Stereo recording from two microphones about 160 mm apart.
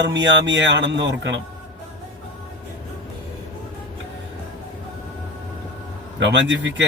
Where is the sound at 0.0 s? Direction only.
90° right.